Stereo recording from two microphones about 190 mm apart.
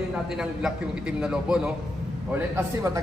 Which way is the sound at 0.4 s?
5° right (ahead or behind).